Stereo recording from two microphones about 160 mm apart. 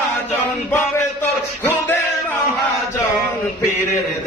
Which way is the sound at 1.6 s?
15° left (ahead or behind).